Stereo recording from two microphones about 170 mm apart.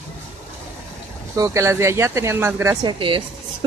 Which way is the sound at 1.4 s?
15° right (ahead or behind).